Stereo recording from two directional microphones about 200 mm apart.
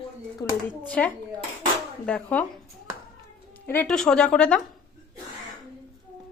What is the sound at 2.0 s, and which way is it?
Speech, 5° left (ahead or behind).